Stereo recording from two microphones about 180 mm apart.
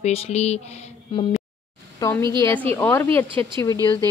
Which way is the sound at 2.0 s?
15° left (ahead or behind).